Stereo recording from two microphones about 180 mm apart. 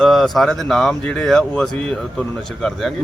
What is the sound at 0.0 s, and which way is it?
Speech, centre (ahead or behind).